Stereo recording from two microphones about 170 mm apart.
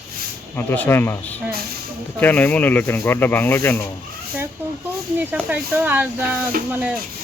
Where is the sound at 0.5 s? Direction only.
10° left (ahead or behind).